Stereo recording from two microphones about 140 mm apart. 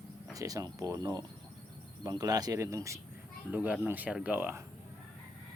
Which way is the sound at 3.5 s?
10° right (ahead or behind).